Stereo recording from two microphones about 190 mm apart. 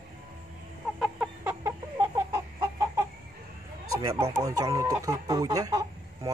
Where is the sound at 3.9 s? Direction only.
15° right (ahead or behind).